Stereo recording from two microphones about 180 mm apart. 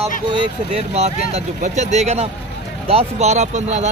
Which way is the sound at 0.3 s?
30° right (ahead or behind).